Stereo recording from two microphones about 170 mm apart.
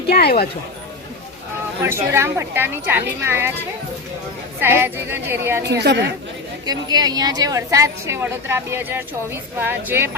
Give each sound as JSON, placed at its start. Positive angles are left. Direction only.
{"t": 0.1, "sound": "speech", "side_deg": 65}
{"t": 1.8, "sound": "a woman's voice", "side_deg": -15}
{"t": 4.6, "sound": "a woman's voice", "side_deg": -15}
{"t": 5.6, "sound": "a woman's voice", "side_deg": -85}
{"t": 6.7, "sound": "a woman's voice", "side_deg": -25}